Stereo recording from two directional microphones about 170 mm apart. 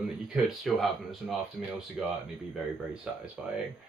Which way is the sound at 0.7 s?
Centre (ahead or behind).